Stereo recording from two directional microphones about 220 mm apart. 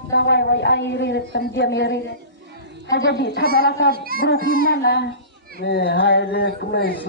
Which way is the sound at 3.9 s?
40° right (ahead or behind).